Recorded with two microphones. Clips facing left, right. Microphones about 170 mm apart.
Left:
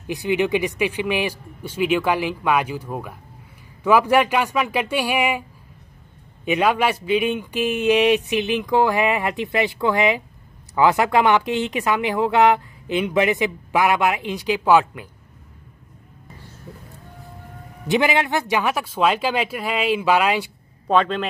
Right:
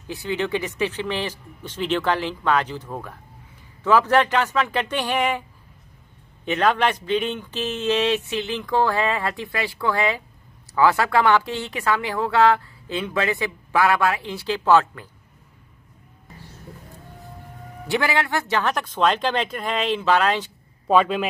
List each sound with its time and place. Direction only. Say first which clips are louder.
0.0 s speech: left 5 dB; 15° left (ahead or behind)
6.4 s speech: left 1 dB; 10° left (ahead or behind)
17.8 s speech: left 3 dB; 20° left (ahead or behind)
20.8 s a man's voice: right 1 dB; 5° right (ahead or behind)